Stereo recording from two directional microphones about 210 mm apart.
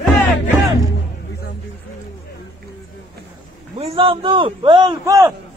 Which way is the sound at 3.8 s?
25° right (ahead or behind).